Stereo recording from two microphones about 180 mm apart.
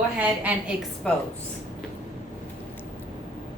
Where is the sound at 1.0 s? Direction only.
5° left (ahead or behind).